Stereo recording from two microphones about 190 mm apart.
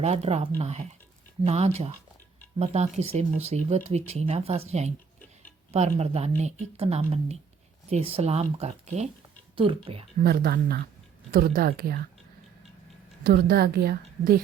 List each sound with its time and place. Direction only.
0.0 s speech: 35° right (ahead or behind)
10.2 s a woman's voice: 55° right (ahead or behind)
13.2 s a woman's voice: 55° right (ahead or behind)